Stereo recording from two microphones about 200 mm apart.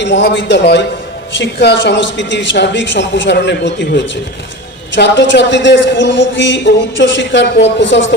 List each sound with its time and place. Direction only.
0.0 s a man's voice: 65° left (ahead or behind)